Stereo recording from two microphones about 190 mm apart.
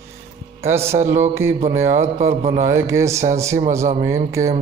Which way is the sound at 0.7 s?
15° right (ahead or behind).